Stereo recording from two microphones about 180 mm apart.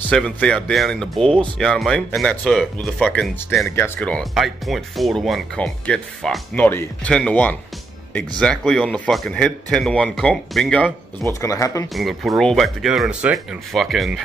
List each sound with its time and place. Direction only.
0.1 s speech: 5° left (ahead or behind)
3.7 s speech: 15° left (ahead or behind)
11.4 s speech: 20° left (ahead or behind)
11.9 s speech: centre (ahead or behind)